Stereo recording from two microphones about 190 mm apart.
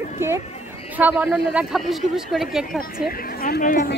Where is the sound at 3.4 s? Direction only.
50° left (ahead or behind).